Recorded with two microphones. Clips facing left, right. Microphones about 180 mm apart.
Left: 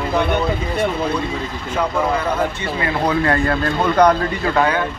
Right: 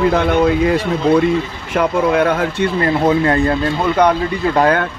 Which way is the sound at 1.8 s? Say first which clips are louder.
Right 6 dB; 70° right (ahead or behind).